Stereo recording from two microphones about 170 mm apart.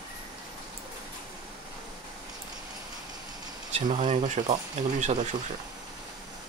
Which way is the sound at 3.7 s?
40° right (ahead or behind).